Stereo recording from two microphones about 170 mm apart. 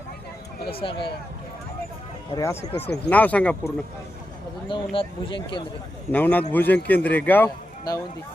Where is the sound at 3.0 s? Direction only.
10° left (ahead or behind).